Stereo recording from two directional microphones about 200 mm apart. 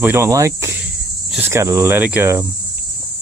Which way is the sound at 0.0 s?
10° right (ahead or behind).